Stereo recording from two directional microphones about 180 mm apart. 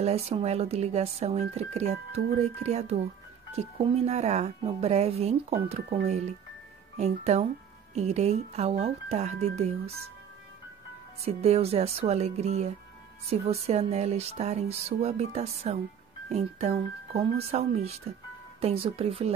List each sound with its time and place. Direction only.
0.0 s speech: 35° right (ahead or behind)
7.0 s speech: 35° right (ahead or behind)
11.2 s speech: 35° right (ahead or behind)